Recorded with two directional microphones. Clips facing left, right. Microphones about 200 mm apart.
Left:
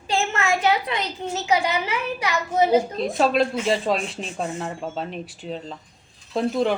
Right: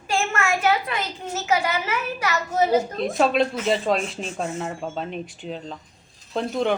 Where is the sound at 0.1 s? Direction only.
20° left (ahead or behind).